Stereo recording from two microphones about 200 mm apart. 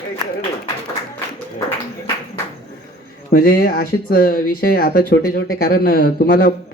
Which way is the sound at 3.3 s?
45° left (ahead or behind).